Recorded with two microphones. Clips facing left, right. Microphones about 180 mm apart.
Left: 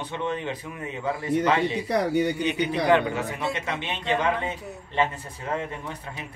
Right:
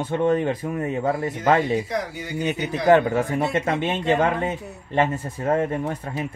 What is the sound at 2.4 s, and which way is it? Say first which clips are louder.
A man's voice: right 3 dB; 45° right (ahead or behind).